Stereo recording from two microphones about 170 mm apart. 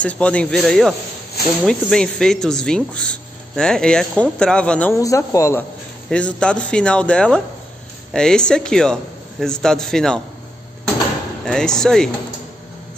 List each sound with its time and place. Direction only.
0.0 s speech: 5° left (ahead or behind)
11.4 s speech: 5° left (ahead or behind)